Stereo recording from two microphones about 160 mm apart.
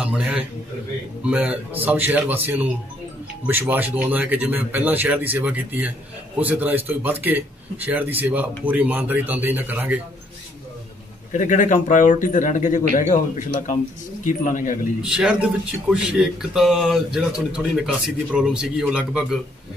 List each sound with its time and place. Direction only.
0.0 s a sound: 5° right (ahead or behind)
1.3 s speech: 10° right (ahead or behind)
11.3 s speech: 50° left (ahead or behind)
15.0 s a man's voice: 5° right (ahead or behind)